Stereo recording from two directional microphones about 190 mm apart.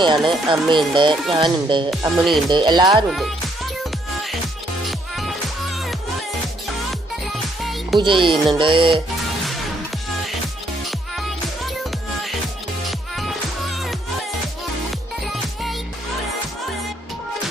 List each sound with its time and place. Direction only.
0.3 s speech: 25° right (ahead or behind)
1.9 s speech: centre (ahead or behind)
2.5 s speech: 25° right (ahead or behind)
2.9 s speech: centre (ahead or behind)
4.9 s music: centre (ahead or behind)
7.6 s music: centre (ahead or behind)
7.9 s speech: 25° right (ahead or behind)
11.2 s music: centre (ahead or behind)